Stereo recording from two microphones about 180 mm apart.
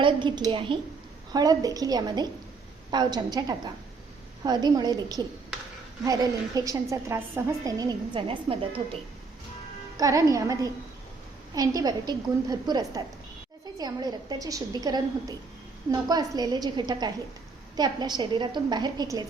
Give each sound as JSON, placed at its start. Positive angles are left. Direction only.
{"t": 0.0, "sound": "a woman's voice", "side_deg": -25}
{"t": 10.0, "sound": "a woman's voice", "side_deg": -20}